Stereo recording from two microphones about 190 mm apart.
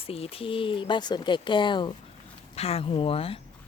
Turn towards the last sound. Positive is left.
turn(degrees=30)  # may be behind; listen again after turning